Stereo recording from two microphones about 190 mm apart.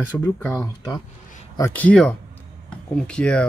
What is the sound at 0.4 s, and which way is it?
Speech, 10° left (ahead or behind).